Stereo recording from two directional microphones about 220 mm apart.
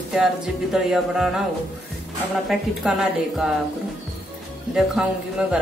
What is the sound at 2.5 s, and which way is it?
Speech, centre (ahead or behind).